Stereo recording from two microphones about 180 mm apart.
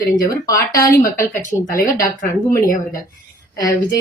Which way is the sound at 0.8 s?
50° left (ahead or behind).